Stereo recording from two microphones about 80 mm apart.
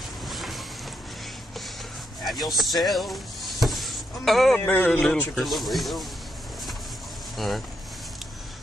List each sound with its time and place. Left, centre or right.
0.3 s vehicle: centre
2.2 s a sound: centre
4.7 s speech: left
5.1 s speech: centre
7.3 s speech: centre